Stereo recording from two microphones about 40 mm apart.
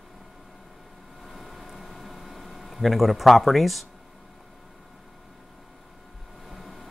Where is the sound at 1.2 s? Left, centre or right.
Centre.